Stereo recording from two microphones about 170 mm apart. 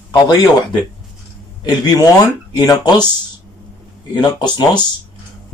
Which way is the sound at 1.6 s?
20° left (ahead or behind).